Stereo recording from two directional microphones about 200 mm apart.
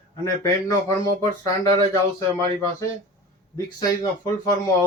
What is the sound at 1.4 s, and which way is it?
Speech, 15° left (ahead or behind).